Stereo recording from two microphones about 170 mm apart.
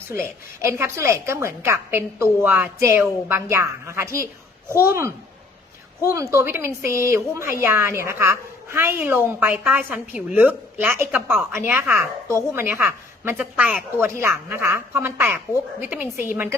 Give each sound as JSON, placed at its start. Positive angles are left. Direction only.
{"t": 0.1, "sound": "a woman's voice", "side_deg": -15}